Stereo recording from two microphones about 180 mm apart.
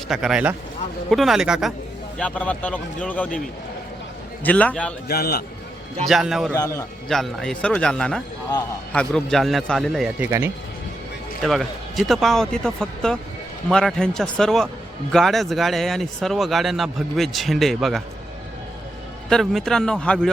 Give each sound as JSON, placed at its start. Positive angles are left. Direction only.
{"t": 0.1, "sound": "speech", "side_deg": -5}
{"t": 2.1, "sound": "speech", "side_deg": 5}
{"t": 4.4, "sound": "speech", "side_deg": 5}
{"t": 5.0, "sound": "a man's voice", "side_deg": 55}
{"t": 6.1, "sound": "speech", "side_deg": 0}
{"t": 6.6, "sound": "speech", "side_deg": 15}
{"t": 7.1, "sound": "speech", "side_deg": 0}
{"t": 10.2, "sound": "speech", "side_deg": -15}
{"t": 11.4, "sound": "speech", "side_deg": 0}
{"t": 19.3, "sound": "speech", "side_deg": 0}